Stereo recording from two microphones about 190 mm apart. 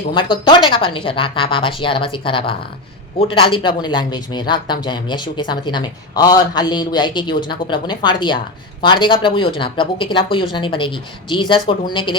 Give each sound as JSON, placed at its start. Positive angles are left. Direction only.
{"t": 0.1, "sound": "speech", "side_deg": 25}